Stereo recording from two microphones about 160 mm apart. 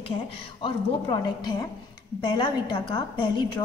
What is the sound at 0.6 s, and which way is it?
A woman's voice, 30° left (ahead or behind).